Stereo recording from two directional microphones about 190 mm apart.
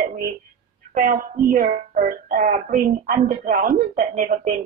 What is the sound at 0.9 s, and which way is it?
Speech, 45° right (ahead or behind).